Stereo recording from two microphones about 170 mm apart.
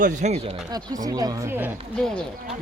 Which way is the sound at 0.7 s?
20° right (ahead or behind).